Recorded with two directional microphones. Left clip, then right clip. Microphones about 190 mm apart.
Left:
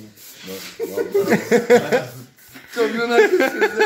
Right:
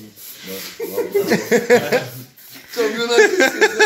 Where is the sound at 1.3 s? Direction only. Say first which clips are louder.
Even; 10° left (ahead or behind).